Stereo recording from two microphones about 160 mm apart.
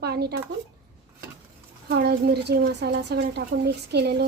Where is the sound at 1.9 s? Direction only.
85° right.